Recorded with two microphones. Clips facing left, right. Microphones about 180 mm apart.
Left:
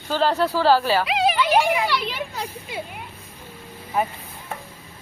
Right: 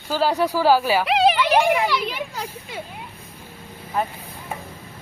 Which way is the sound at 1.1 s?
65° right (ahead or behind).